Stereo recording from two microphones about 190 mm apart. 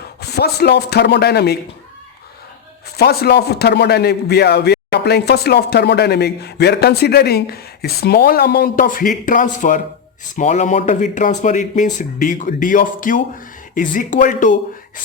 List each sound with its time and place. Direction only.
0.2 s speech: 60° left (ahead or behind)
3.0 s speech: 55° left (ahead or behind)